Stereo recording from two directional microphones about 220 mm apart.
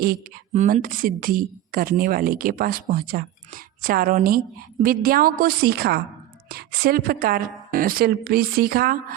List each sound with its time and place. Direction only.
0.0 s a woman's voice: 40° right (ahead or behind)